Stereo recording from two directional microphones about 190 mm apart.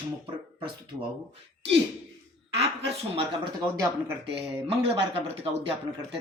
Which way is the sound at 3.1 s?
20° right (ahead or behind).